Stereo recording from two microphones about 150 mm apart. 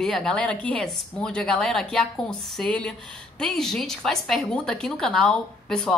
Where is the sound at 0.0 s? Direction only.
5° left (ahead or behind).